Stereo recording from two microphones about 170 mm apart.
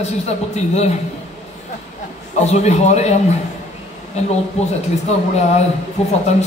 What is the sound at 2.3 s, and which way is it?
Speech, 40° left (ahead or behind).